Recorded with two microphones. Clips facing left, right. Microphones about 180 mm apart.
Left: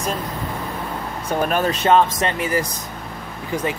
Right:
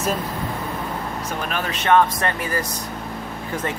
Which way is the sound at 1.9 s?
20° left (ahead or behind).